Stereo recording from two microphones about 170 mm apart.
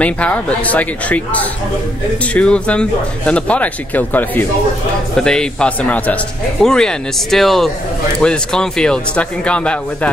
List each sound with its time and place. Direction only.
0.0 s speech: 10° left (ahead or behind)